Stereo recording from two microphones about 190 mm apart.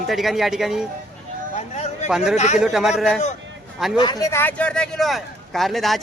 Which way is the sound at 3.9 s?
25° left (ahead or behind).